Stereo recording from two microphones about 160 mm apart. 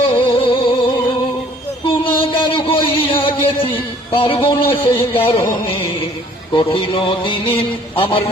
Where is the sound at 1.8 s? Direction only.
30° left (ahead or behind).